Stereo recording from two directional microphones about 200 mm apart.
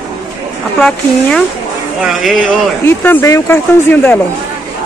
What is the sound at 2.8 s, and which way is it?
Speech, 10° left (ahead or behind).